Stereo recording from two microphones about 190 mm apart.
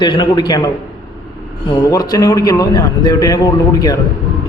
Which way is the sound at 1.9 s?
20° left (ahead or behind).